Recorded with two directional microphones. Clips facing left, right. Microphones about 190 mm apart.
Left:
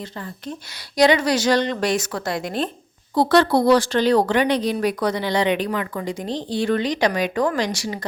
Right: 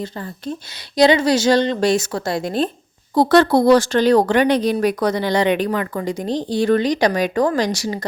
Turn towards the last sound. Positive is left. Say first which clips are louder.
# right 4 dB
turn(degrees=-40)  # may be behind; listen again after turning